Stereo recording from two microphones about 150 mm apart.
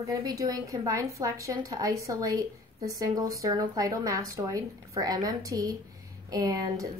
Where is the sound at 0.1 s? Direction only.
25° right (ahead or behind).